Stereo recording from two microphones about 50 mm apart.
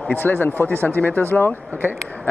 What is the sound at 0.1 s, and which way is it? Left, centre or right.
Speech, left.